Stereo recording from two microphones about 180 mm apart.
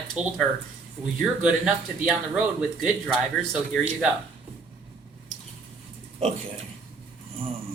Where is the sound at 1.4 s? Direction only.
5° right (ahead or behind).